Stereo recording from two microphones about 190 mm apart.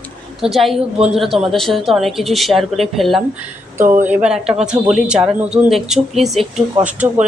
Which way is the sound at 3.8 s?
45° right (ahead or behind).